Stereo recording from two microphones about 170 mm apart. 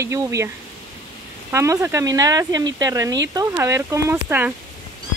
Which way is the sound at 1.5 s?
15° right (ahead or behind).